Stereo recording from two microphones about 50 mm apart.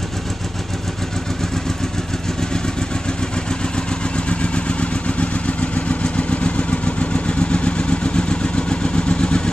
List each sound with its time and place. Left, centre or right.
4.3 s vehicle: left